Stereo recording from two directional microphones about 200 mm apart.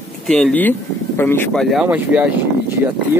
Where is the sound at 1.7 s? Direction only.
5° right (ahead or behind).